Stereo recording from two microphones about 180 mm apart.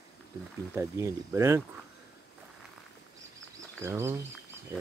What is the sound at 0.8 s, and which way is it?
Speech, 15° right (ahead or behind).